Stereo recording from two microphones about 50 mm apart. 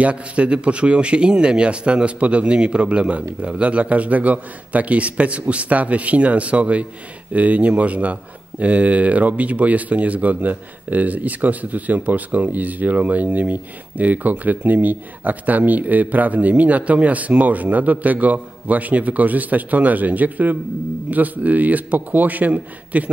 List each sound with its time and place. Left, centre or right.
0.0 s speech: right